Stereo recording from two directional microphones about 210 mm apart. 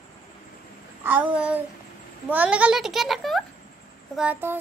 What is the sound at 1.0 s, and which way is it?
Child singing, 5° right (ahead or behind).